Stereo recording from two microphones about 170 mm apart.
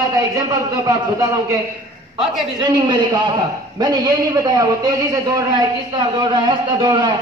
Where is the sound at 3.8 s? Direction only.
25° right (ahead or behind).